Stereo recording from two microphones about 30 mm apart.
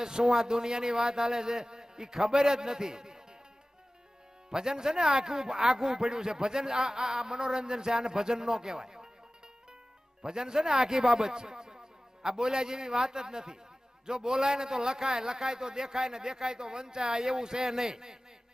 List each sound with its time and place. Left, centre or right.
0.0 s speech: right
4.4 s speech: right
10.2 s speech: right